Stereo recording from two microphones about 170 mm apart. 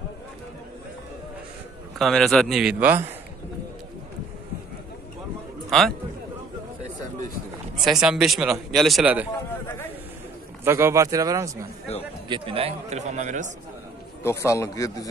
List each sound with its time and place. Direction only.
2.0 s a man's voice: centre (ahead or behind)
5.7 s a man's voice: centre (ahead or behind)
7.8 s a man's voice: 5° right (ahead or behind)
10.6 s speech: 15° right (ahead or behind)
12.3 s speech: 35° right (ahead or behind)
14.2 s a man's voice: 20° left (ahead or behind)